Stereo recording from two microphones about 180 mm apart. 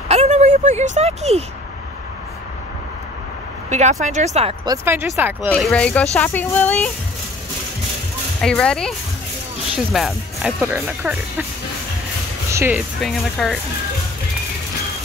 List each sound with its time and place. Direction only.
0.1 s a sound: 35° right (ahead or behind)
4.0 s speech: 40° right (ahead or behind)
4.6 s speech: 15° right (ahead or behind)
5.5 s speech: 5° left (ahead or behind)
8.4 s speech: 5° left (ahead or behind)
9.9 s speech: centre (ahead or behind)
10.6 s speech: 10° right (ahead or behind)
12.4 s music: 15° right (ahead or behind)
12.7 s speech: centre (ahead or behind)